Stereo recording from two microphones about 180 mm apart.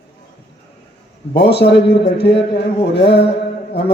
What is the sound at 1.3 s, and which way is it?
Speech, 65° left (ahead or behind).